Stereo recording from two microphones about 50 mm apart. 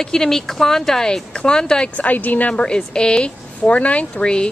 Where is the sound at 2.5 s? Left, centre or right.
Centre.